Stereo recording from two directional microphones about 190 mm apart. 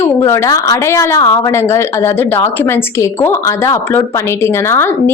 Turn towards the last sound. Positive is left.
turn(degrees=15)  # may be behind; listen again after turning